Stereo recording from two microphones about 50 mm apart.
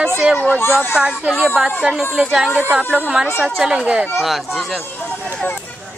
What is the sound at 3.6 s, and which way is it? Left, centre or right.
Speech, centre.